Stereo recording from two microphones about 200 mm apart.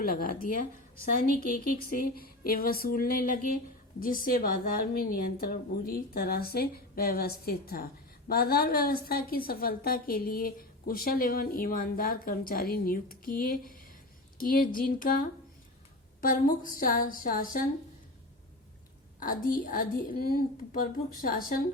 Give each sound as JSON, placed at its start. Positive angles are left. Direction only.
{"t": 0.0, "sound": "a woman's voice", "side_deg": 45}
{"t": 19.2, "sound": "a woman's voice", "side_deg": 45}